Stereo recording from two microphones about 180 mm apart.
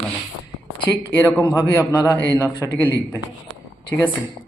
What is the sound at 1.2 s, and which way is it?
Speech, 20° left (ahead or behind).